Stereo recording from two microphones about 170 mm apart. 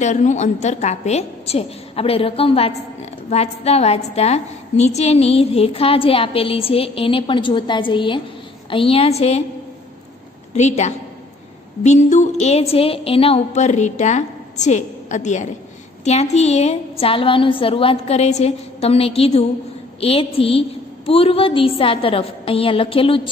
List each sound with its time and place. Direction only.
0.0 s a woman's voice: 45° left (ahead or behind)
10.5 s a woman's voice: 40° left (ahead or behind)
11.8 s a sound: 45° left (ahead or behind)
16.0 s a woman's voice: 40° left (ahead or behind)